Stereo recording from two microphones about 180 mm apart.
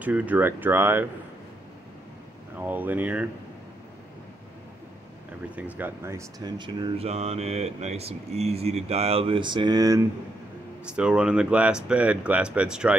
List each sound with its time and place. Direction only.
0.0 s speech: 10° right (ahead or behind)
2.5 s speech: 10° right (ahead or behind)
5.6 s speech: 10° right (ahead or behind)
10.9 s speech: 5° right (ahead or behind)